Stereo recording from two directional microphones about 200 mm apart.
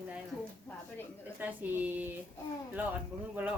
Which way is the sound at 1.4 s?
10° right (ahead or behind).